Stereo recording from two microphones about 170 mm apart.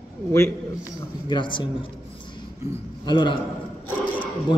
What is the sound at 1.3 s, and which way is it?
Speech, 25° left (ahead or behind).